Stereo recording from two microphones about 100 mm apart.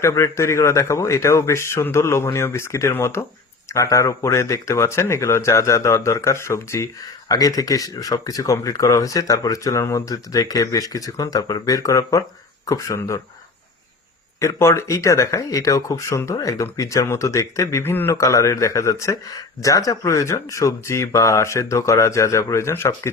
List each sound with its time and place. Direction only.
0.0 s speech: 30° left (ahead or behind)
14.3 s speech: 30° left (ahead or behind)